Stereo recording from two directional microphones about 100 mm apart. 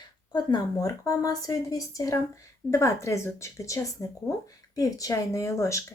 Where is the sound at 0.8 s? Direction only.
35° left (ahead or behind).